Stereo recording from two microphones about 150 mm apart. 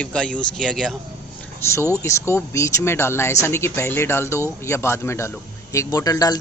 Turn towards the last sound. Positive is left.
turn(degrees=25)  # may be behind; listen again after turning